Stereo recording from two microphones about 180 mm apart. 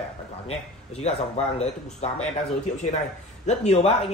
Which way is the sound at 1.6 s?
40° left (ahead or behind).